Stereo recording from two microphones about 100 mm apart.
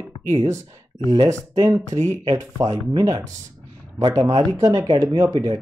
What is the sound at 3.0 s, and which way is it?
Speech, 45° right (ahead or behind).